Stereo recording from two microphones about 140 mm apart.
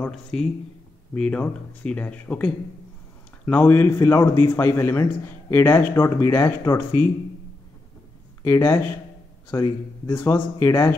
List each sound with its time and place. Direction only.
0.0 s a man's voice: 5° left (ahead or behind); by 7.1 s 20° left (ahead or behind)
8.5 s a man's voice: 15° left (ahead or behind)